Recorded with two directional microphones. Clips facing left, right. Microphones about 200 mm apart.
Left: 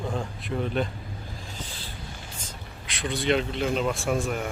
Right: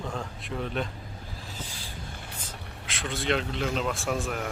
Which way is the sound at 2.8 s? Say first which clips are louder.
Left 4 dB; centre (ahead or behind).